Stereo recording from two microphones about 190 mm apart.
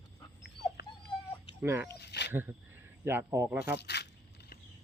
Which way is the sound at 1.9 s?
65° left (ahead or behind).